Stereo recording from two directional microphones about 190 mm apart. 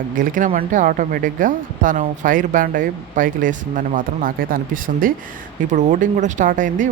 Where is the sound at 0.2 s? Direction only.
45° right (ahead or behind).